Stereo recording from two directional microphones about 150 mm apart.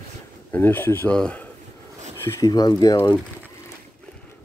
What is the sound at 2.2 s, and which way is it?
Speech, 25° left (ahead or behind).